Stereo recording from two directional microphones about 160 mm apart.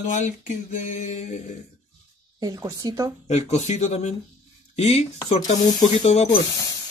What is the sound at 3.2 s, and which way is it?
A man's voice, 45° left (ahead or behind).